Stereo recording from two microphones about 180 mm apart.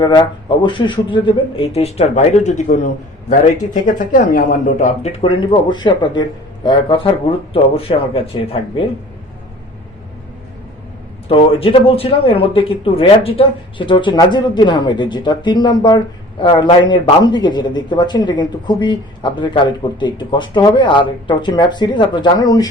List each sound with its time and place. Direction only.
0.0 s speech: 25° left (ahead or behind); by 5.1 s 45° left (ahead or behind)
5.2 s speech: 25° left (ahead or behind)
11.3 s speech: 30° left (ahead or behind)